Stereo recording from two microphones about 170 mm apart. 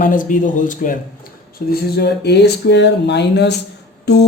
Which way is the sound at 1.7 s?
70° left (ahead or behind).